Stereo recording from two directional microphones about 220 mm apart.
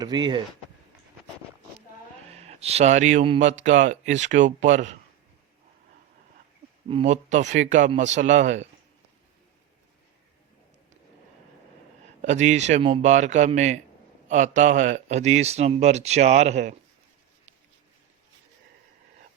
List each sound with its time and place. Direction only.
0.0 s speech: 20° right (ahead or behind)
2.3 s speech: 30° right (ahead or behind)
6.8 s speech: 30° right (ahead or behind)
12.2 s speech: 30° right (ahead or behind)